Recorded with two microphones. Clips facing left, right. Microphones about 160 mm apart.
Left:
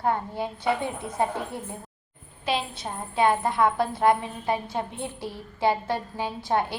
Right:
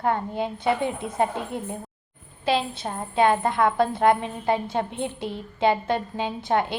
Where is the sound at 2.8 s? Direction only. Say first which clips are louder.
Right 1 dB; 50° right (ahead or behind).